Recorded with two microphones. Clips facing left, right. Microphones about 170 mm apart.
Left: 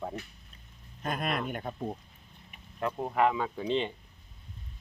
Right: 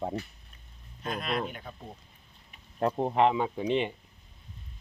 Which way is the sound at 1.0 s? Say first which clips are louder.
Even; 50° left (ahead or behind).